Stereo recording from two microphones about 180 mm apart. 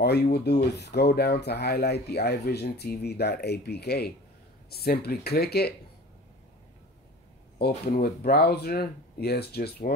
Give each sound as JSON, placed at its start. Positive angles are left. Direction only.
{"t": 0.0, "sound": "speech", "side_deg": 65}
{"t": 8.0, "sound": "speech", "side_deg": 60}